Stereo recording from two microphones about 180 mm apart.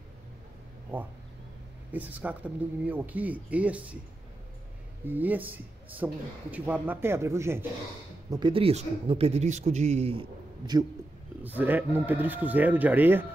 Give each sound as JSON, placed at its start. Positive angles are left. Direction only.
{"t": 0.9, "sound": "speech", "side_deg": -10}
{"t": 5.0, "sound": "speech", "side_deg": -10}
{"t": 8.3, "sound": "speech", "side_deg": -25}
{"t": 10.7, "sound": "speech", "side_deg": -20}
{"t": 11.4, "sound": "speech", "side_deg": -10}